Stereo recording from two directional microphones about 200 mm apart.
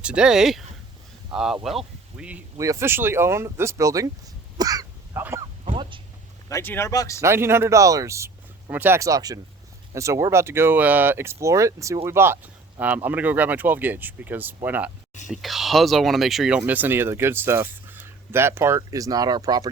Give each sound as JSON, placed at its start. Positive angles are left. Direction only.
{"t": 0.0, "sound": "speech", "side_deg": -5}
{"t": 4.5, "sound": "throat clearing", "side_deg": -20}
{"t": 5.6, "sound": "a sound", "side_deg": -25}
{"t": 6.5, "sound": "speech", "side_deg": 10}
{"t": 7.2, "sound": "speech", "side_deg": -15}